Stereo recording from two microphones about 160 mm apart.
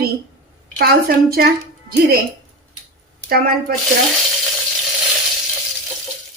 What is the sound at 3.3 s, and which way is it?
Speech, 70° right (ahead or behind).